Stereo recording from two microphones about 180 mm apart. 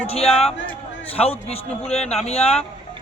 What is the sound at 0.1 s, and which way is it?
A man's voice, 35° left (ahead or behind).